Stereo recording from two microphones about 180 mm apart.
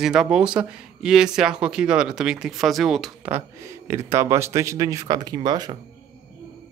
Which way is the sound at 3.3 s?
15° right (ahead or behind).